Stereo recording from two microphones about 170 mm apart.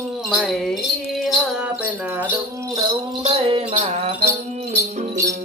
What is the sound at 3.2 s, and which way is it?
Music, 35° right (ahead or behind).